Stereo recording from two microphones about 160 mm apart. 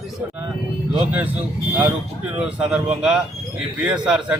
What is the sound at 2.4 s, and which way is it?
A man's voice, 5° right (ahead or behind).